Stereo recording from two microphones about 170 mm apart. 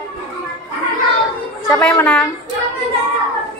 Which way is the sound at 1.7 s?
10° left (ahead or behind).